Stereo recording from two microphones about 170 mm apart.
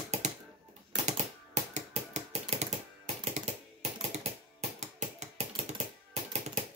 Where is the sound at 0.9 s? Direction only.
45° right (ahead or behind).